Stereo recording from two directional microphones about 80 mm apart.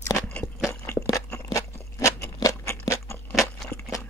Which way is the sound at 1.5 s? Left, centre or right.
Left.